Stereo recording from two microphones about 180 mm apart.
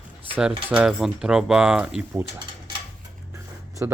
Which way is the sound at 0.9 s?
5° right (ahead or behind).